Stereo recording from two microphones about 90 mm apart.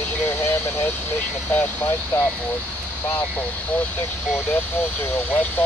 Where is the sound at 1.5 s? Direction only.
20° left (ahead or behind).